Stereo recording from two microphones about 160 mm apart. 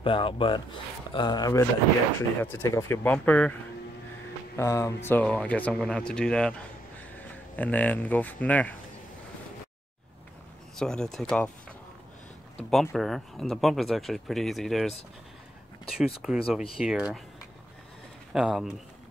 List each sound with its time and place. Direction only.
0.0 s speech: 35° left (ahead or behind); by 3.5 s 10° left (ahead or behind)
4.6 s speech: 20° left (ahead or behind)
7.5 s speech: 10° left (ahead or behind)
10.8 s speech: 5° left (ahead or behind)
12.5 s speech: centre (ahead or behind)
16.2 s speech: 5° right (ahead or behind)
18.3 s speech: centre (ahead or behind)